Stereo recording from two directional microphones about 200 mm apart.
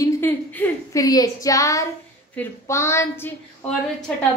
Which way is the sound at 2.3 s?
15° left (ahead or behind).